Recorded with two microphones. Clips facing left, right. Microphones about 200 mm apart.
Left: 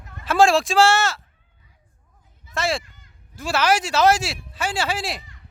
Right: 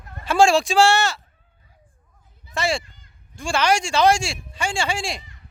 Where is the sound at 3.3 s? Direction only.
5° left (ahead or behind).